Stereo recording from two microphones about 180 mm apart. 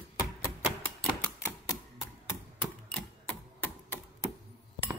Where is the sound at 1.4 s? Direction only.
15° left (ahead or behind).